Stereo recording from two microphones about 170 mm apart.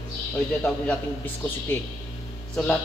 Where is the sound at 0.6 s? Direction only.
10° left (ahead or behind).